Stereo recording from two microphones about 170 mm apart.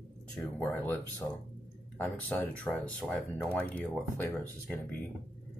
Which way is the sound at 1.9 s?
10° left (ahead or behind).